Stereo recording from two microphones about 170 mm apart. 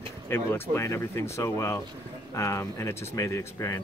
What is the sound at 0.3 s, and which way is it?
Speech, 15° left (ahead or behind).